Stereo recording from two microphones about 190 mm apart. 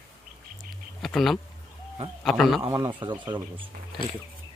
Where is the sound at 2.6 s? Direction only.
20° right (ahead or behind).